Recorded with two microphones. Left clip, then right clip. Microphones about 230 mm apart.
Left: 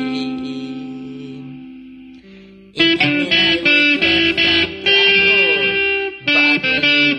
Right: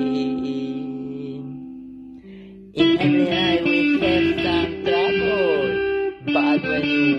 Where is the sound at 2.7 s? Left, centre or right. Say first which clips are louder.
Left 3 dB; left.